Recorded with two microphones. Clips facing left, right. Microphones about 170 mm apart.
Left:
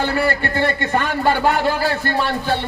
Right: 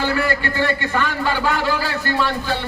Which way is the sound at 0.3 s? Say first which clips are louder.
Left 1 dB; 50° left (ahead or behind).